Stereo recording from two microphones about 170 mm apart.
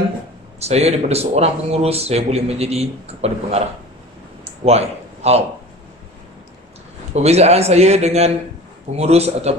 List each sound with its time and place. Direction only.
0.6 s speech: 40° right (ahead or behind)
4.6 s speech: 40° right (ahead or behind)
7.2 s speech: 40° right (ahead or behind)